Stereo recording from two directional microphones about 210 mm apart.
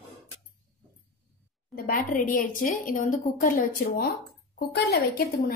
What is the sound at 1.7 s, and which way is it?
A woman's voice, 40° left (ahead or behind).